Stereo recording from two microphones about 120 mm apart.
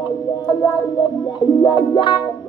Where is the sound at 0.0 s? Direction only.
40° left (ahead or behind).